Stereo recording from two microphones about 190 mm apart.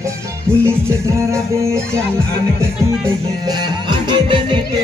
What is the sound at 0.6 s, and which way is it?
Music, 15° right (ahead or behind).